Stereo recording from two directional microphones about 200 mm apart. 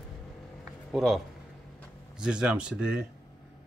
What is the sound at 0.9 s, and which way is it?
Speech, centre (ahead or behind).